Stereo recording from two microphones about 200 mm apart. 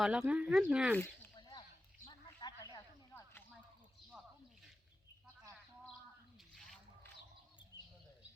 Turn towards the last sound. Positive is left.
turn(degrees=5)  # may be behind; listen again after turning